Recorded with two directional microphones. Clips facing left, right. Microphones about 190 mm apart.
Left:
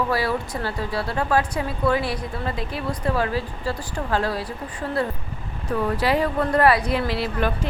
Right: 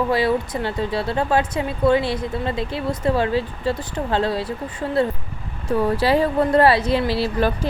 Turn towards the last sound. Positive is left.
turn(degrees=-30)  # may be behind; listen again after turning